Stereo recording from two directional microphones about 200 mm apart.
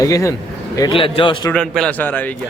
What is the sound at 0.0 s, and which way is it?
Speech, 15° left (ahead or behind).